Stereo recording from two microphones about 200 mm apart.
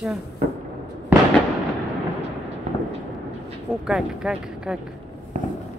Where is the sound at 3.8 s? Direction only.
5° right (ahead or behind).